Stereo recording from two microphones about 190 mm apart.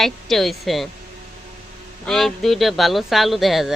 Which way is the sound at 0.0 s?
Centre (ahead or behind).